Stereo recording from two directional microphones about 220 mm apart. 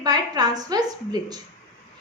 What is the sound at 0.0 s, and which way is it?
Speech, 20° right (ahead or behind).